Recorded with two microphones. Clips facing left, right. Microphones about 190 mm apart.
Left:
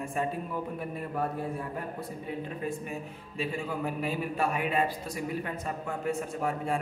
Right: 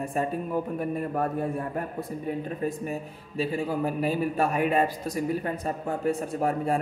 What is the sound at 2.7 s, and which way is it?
A man's voice, 40° right (ahead or behind).